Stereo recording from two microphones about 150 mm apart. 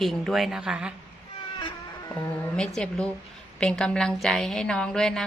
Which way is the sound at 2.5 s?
5° left (ahead or behind).